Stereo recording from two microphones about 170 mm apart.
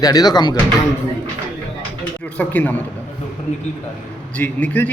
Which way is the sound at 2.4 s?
10° left (ahead or behind).